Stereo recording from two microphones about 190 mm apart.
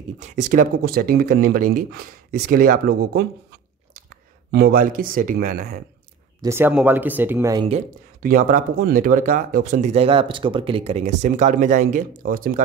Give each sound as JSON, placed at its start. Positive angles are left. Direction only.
{"t": 0.2, "sound": "speech", "side_deg": -40}
{"t": 4.5, "sound": "speech", "side_deg": -55}
{"t": 6.4, "sound": "speech", "side_deg": -10}
{"t": 8.2, "sound": "speech", "side_deg": -50}